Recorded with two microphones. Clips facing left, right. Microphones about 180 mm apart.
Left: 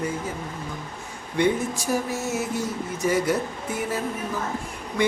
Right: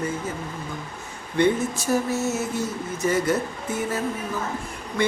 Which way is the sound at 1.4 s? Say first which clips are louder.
Right 2 dB; 15° left (ahead or behind).